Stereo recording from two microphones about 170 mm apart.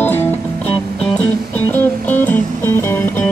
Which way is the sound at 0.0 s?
10° left (ahead or behind).